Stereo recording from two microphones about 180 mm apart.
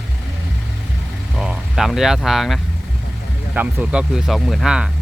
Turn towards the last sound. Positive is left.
turn(degrees=-5)  # may be behind; listen again after turning